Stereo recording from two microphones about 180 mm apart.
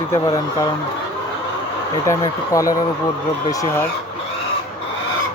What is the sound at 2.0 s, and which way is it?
Speech, 20° left (ahead or behind).